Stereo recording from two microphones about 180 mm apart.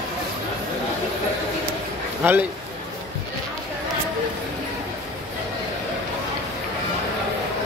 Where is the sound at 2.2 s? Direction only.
10° right (ahead or behind).